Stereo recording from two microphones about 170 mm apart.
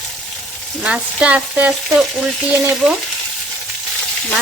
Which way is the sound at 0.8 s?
5° right (ahead or behind).